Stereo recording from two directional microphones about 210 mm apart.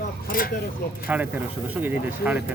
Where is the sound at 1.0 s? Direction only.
5° right (ahead or behind).